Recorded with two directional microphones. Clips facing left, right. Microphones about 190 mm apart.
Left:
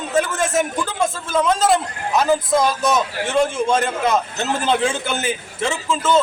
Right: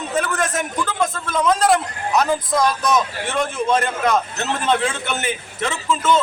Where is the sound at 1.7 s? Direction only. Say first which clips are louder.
Even; 25° left (ahead or behind).